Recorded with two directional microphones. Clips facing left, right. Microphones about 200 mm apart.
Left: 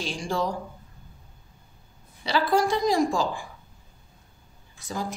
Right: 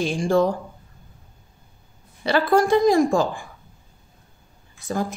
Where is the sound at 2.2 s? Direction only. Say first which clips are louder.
Right 5 dB; 55° right (ahead or behind).